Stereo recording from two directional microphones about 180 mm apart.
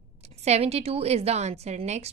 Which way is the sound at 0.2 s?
35° right (ahead or behind).